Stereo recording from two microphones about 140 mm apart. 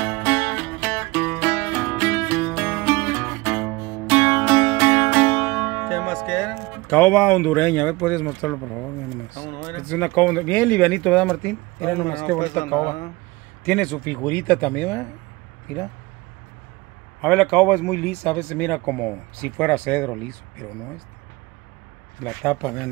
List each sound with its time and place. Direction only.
0.0 s music: 10° left (ahead or behind)
9.3 s speech: 15° left (ahead or behind)
17.2 s speech: 5° left (ahead or behind)
22.2 s speech: 10° left (ahead or behind)